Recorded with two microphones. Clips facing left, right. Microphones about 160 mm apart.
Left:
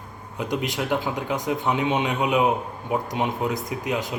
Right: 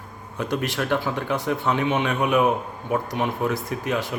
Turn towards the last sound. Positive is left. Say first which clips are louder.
# right 1 dB
turn(degrees=15)  # may be behind; listen again after turning